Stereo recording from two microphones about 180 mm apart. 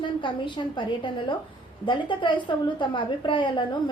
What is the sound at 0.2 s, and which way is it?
Speech, 25° left (ahead or behind).